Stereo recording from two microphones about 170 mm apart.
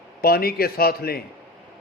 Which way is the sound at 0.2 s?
65° left (ahead or behind).